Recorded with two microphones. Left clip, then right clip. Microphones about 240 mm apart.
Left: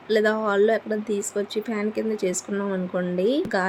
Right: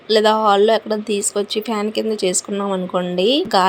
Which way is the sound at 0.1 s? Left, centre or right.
Centre.